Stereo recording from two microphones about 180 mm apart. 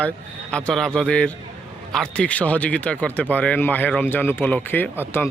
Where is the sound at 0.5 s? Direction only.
5° left (ahead or behind).